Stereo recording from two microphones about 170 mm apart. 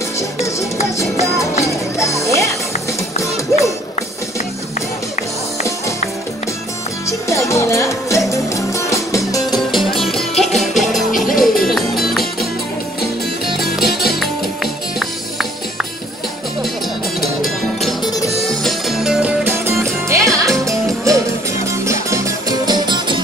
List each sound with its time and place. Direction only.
2.0 s speech: 15° left (ahead or behind)
7.1 s music: 15° left (ahead or behind)
9.5 s music: centre (ahead or behind)
13.6 s music: centre (ahead or behind)
18.5 s music: centre (ahead or behind)
19.6 s music: 15° right (ahead or behind)